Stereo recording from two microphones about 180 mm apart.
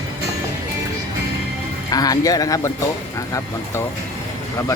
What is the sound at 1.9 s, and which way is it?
Speech, 20° left (ahead or behind).